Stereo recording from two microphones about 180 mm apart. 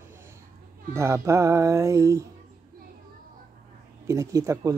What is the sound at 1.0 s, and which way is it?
Speech, 15° right (ahead or behind).